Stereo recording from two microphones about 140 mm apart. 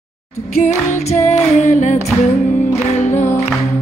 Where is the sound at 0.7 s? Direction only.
55° left (ahead or behind).